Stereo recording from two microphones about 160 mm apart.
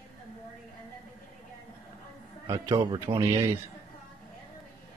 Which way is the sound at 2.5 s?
25° right (ahead or behind).